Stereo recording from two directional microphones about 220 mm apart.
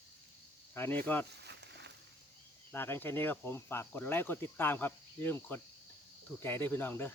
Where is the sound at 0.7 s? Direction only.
10° left (ahead or behind).